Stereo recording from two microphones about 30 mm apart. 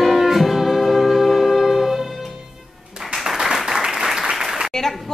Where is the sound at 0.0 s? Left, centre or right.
Centre.